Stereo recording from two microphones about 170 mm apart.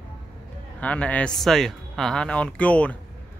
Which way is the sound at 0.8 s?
10° left (ahead or behind).